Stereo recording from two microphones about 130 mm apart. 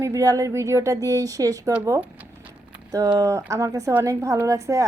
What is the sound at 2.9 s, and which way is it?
A woman's voice, 30° right (ahead or behind).